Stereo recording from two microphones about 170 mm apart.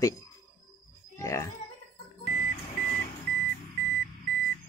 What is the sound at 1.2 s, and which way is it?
Music, 20° left (ahead or behind).